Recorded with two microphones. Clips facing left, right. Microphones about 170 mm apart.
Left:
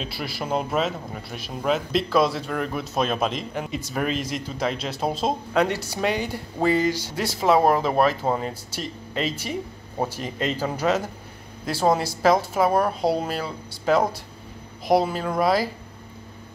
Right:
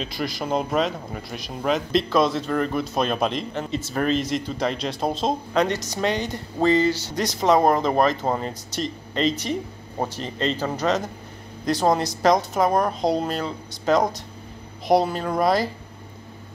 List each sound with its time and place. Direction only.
0.0 s speech: 5° left (ahead or behind)